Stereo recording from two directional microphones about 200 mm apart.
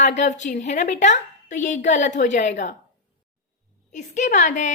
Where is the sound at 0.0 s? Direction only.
35° left (ahead or behind).